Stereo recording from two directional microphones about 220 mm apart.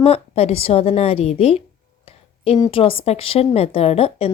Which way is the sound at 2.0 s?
25° left (ahead or behind).